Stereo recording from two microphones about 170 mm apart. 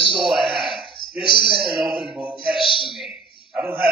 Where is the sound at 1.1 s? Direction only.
65° right (ahead or behind).